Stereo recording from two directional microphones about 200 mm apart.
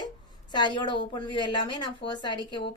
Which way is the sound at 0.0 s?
20° left (ahead or behind).